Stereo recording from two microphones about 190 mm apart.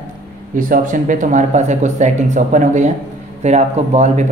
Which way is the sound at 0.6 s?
45° right (ahead or behind).